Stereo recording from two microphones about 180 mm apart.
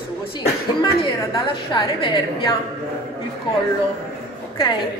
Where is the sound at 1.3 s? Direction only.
25° left (ahead or behind).